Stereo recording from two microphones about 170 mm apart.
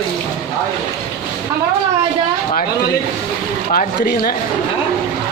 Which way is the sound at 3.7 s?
60° left (ahead or behind).